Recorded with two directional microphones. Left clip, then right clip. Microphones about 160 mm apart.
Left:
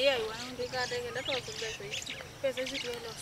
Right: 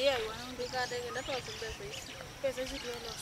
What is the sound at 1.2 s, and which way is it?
Speech, 10° left (ahead or behind).